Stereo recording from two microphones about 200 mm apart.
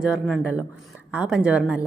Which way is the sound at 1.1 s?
5° right (ahead or behind).